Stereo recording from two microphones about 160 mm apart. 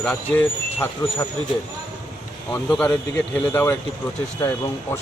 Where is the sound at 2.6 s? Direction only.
5° left (ahead or behind).